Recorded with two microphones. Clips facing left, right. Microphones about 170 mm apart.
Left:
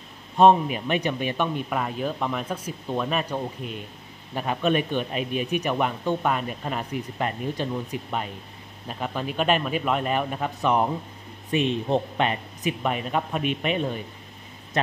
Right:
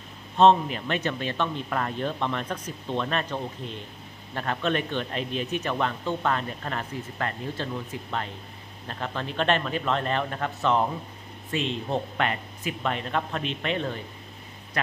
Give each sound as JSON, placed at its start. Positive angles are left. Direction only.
{"t": 0.4, "sound": "speech", "side_deg": 15}